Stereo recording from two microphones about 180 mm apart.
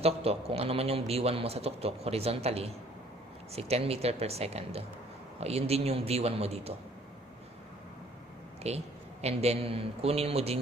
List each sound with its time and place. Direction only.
0.0 s a man's voice: 35° right (ahead or behind)
8.7 s a man's voice: 35° right (ahead or behind)